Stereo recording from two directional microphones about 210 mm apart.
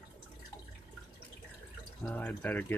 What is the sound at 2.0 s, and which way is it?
Speech, 10° left (ahead or behind).